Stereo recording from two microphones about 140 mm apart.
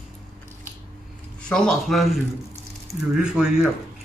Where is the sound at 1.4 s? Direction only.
5° left (ahead or behind).